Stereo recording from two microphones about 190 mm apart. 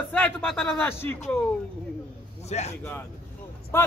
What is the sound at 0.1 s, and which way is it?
Speech, 10° left (ahead or behind).